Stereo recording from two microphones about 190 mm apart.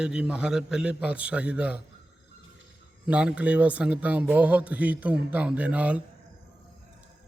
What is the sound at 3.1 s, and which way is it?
Speech, 5° right (ahead or behind).